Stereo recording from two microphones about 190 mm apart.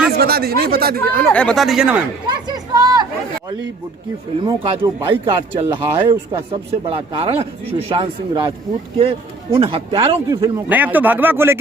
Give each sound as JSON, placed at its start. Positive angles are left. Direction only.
{"t": 0.2, "sound": "speech", "side_deg": -55}
{"t": 1.3, "sound": "speech", "side_deg": 5}
{"t": 2.2, "sound": "a sound", "side_deg": -20}
{"t": 4.4, "sound": "speech", "side_deg": -25}
{"t": 9.6, "sound": "speech", "side_deg": -30}